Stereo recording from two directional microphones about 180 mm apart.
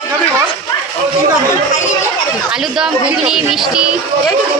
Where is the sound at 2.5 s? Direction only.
Centre (ahead or behind).